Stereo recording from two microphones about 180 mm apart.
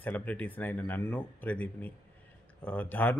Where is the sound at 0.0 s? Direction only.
10° left (ahead or behind).